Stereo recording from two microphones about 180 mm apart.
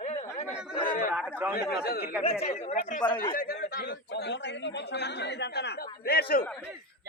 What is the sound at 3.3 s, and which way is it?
Speech, 55° left (ahead or behind).